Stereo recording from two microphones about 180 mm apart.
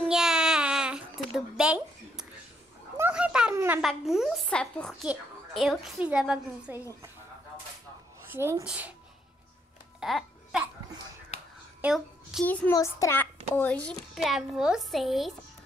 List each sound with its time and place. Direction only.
0.1 s babbling: 5° right (ahead or behind)
3.0 s a sound: 5° right (ahead or behind)
3.5 s a child's voice: 10° right (ahead or behind)
8.3 s speech: 15° right (ahead or behind)
9.9 s music: centre (ahead or behind)
11.8 s a sound: 5° right (ahead or behind)
12.4 s a child's voice: 10° left (ahead or behind)